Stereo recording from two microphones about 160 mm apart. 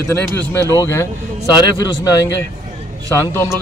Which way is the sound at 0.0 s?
15° left (ahead or behind).